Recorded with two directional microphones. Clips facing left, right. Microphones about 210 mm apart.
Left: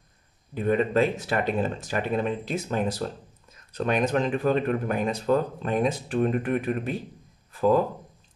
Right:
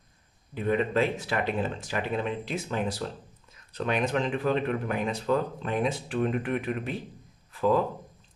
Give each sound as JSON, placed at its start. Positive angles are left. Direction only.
{"t": 0.6, "sound": "speech", "side_deg": 45}